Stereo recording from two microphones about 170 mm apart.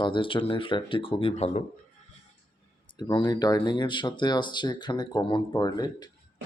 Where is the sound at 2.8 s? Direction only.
25° left (ahead or behind).